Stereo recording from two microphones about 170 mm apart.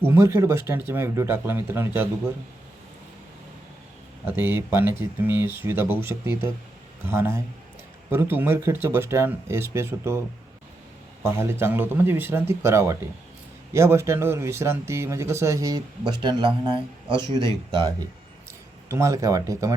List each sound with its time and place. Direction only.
0.0 s speech: 15° right (ahead or behind)
4.3 s speech: 10° right (ahead or behind)
11.2 s speech: 15° right (ahead or behind)